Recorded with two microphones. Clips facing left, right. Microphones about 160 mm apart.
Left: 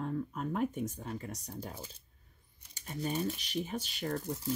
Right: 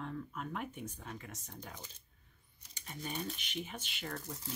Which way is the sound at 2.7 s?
35° left (ahead or behind).